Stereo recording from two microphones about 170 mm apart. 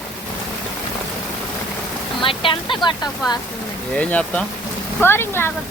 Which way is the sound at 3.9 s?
5° left (ahead or behind).